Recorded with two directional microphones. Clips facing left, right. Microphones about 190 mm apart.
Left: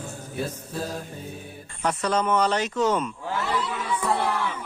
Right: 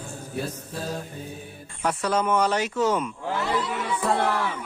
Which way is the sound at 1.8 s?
10° right (ahead or behind).